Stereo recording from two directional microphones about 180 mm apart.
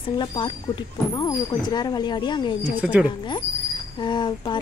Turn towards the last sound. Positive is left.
turn(degrees=25)  # may be behind; listen again after turning